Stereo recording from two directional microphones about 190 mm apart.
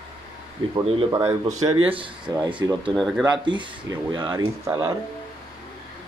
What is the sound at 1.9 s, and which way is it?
Speech, 25° right (ahead or behind).